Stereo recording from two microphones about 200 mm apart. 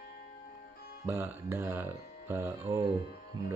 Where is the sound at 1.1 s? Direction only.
10° right (ahead or behind).